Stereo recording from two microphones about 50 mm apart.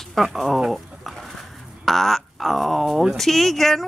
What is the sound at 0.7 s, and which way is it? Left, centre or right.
Bird, centre.